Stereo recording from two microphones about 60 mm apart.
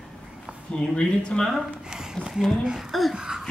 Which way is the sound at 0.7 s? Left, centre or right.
Centre.